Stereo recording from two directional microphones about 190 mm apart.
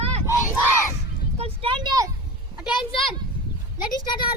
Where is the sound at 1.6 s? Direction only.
25° right (ahead or behind).